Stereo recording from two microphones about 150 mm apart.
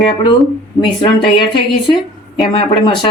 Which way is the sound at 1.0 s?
30° left (ahead or behind).